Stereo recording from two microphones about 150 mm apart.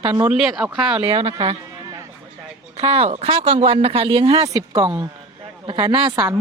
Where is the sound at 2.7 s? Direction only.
40° right (ahead or behind).